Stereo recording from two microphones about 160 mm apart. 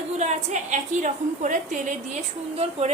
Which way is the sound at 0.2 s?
45° right (ahead or behind).